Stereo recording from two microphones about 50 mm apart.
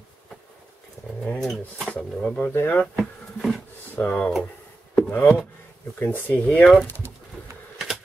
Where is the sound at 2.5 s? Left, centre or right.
Left.